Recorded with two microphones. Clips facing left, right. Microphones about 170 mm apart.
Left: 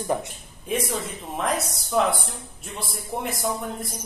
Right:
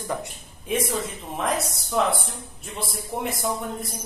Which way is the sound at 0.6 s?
Centre (ahead or behind).